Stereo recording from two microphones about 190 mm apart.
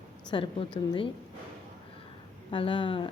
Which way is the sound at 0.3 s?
25° left (ahead or behind).